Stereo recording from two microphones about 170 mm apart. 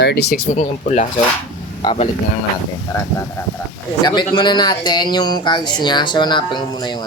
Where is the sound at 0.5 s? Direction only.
45° left (ahead or behind).